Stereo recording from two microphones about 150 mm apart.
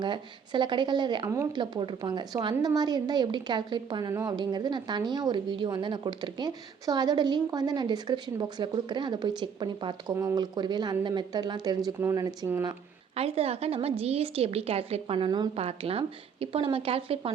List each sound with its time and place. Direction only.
0.0 s a woman's voice: 30° right (ahead or behind)
13.1 s a woman's voice: 40° right (ahead or behind)